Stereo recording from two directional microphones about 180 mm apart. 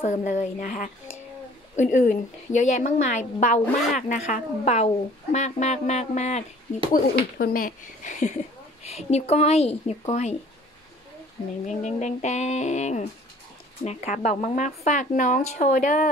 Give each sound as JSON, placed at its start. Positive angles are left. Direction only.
{"t": 0.0, "sound": "a woman's voice", "side_deg": 45}
{"t": 6.9, "sound": "a woman's voice", "side_deg": 55}
{"t": 11.6, "sound": "a woman's voice", "side_deg": 40}